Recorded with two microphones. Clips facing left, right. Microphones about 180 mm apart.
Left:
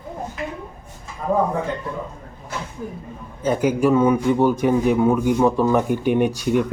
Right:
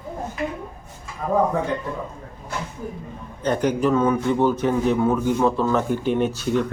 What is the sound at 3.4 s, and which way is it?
A man's voice, 5° left (ahead or behind).